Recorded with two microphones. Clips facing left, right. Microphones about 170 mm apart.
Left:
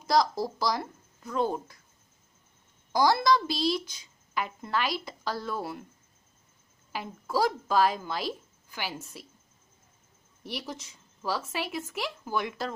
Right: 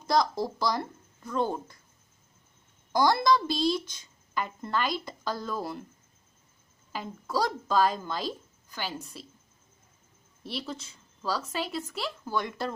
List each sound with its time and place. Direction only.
0.1 s speech: centre (ahead or behind)
2.9 s speech: 5° left (ahead or behind)
3.8 s speech: 50° right (ahead or behind)
4.3 s speech: 5° left (ahead or behind)
6.9 s speech: 10° left (ahead or behind)
10.4 s a woman's voice: 10° left (ahead or behind)